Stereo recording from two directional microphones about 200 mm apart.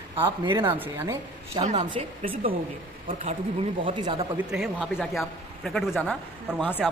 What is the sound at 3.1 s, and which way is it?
Speech, 40° right (ahead or behind).